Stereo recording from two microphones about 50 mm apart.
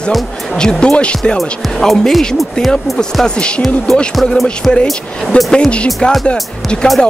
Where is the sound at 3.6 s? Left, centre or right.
Centre.